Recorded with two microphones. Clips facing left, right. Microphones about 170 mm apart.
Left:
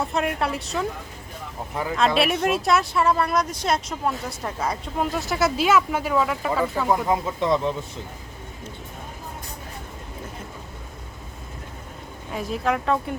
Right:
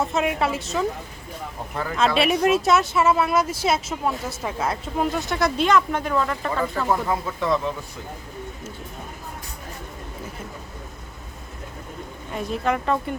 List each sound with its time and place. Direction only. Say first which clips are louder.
0.0 s speech: right 2 dB; centre (ahead or behind)
2.0 s speech: right 1 dB; centre (ahead or behind)
7.1 s speech: left 2 dB; 20° left (ahead or behind)
12.3 s speech: even; centre (ahead or behind)